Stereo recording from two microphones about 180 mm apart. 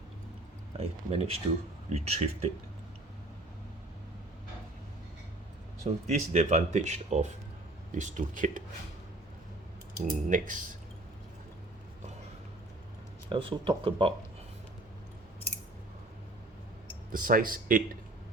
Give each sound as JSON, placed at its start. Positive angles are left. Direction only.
{"t": 0.8, "sound": "speech", "side_deg": -35}
{"t": 6.1, "sound": "speech", "side_deg": -40}
{"t": 10.1, "sound": "speech", "side_deg": -45}
{"t": 13.3, "sound": "speech", "side_deg": -30}
{"t": 17.1, "sound": "speech", "side_deg": -50}